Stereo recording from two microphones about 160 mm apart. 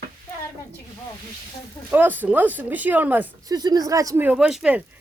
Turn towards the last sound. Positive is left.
turn(degrees=-5)  # may be behind; listen again after turning